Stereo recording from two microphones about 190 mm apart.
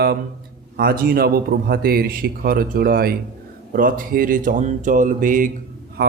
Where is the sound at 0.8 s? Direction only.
50° right (ahead or behind).